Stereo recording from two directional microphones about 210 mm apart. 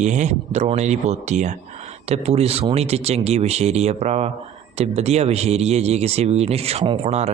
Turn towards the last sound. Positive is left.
turn(degrees=-30)  # may be behind; listen again after turning